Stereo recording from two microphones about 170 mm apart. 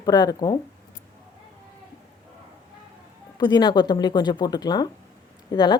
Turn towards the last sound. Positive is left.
turn(degrees=25)  # may be behind; listen again after turning